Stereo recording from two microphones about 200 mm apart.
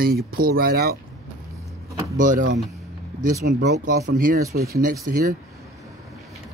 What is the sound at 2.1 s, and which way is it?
Speech, 40° right (ahead or behind).